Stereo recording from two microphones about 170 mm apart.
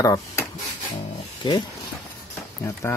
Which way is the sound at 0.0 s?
20° left (ahead or behind).